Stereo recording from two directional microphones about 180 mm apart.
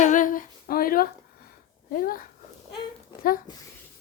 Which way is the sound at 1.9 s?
50° left (ahead or behind).